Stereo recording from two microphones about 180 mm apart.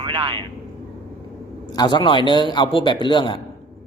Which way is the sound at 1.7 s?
25° left (ahead or behind).